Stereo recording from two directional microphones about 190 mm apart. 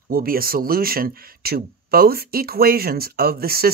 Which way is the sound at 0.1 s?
50° right (ahead or behind).